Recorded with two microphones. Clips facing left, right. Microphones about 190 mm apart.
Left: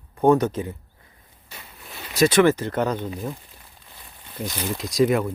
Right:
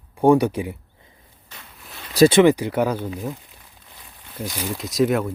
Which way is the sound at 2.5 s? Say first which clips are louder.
Right 3 dB; 10° right (ahead or behind).